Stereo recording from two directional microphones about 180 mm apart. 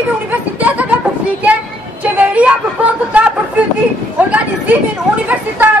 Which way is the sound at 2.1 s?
10° right (ahead or behind).